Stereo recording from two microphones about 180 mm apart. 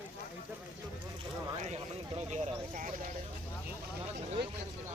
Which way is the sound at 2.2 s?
40° right (ahead or behind).